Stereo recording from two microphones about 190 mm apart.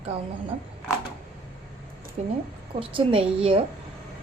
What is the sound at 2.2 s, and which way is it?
A woman's voice, 35° right (ahead or behind).